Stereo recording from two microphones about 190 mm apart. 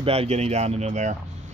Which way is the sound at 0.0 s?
30° right (ahead or behind).